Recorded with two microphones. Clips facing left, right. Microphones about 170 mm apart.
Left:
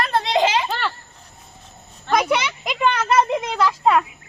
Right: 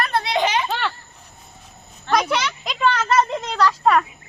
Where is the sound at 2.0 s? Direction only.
5° left (ahead or behind).